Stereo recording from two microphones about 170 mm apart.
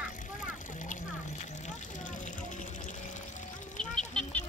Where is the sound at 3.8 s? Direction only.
5° left (ahead or behind).